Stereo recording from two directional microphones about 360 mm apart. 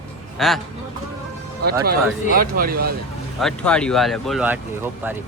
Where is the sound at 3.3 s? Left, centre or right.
Centre.